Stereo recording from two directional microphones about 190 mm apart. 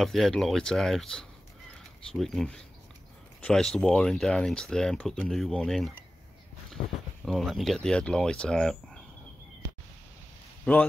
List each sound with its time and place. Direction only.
0.0 s speech: centre (ahead or behind)
6.8 s speech: 45° left (ahead or behind)
7.2 s speech: centre (ahead or behind)
10.6 s speech: 5° left (ahead or behind)